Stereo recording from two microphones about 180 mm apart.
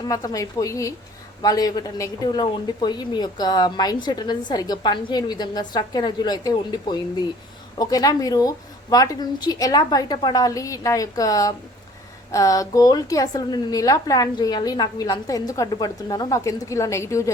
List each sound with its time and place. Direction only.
0.1 s a woman's voice: 20° left (ahead or behind)